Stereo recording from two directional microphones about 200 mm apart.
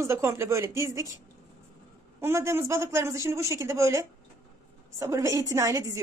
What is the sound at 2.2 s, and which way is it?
Speech, 15° right (ahead or behind).